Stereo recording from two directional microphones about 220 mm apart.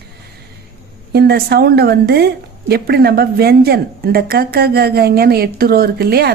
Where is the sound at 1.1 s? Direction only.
45° right (ahead or behind).